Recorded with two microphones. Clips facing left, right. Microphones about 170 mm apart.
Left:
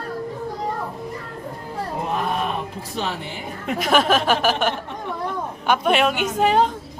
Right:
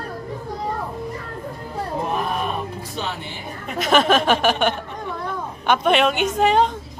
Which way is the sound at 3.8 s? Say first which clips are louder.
Right 2 dB; 10° left (ahead or behind).